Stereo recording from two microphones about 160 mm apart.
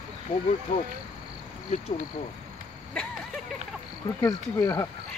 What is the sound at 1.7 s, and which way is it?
Speech, 50° left (ahead or behind).